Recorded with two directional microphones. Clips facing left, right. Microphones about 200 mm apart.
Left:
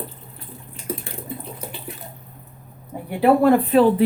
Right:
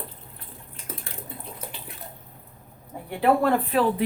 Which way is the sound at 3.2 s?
10° left (ahead or behind).